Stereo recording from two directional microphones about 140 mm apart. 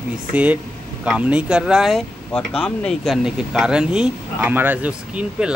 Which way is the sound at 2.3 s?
5° left (ahead or behind).